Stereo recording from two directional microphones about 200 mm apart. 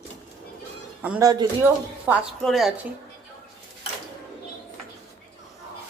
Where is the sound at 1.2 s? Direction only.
20° right (ahead or behind).